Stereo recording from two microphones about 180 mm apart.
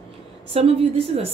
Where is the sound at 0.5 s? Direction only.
30° right (ahead or behind).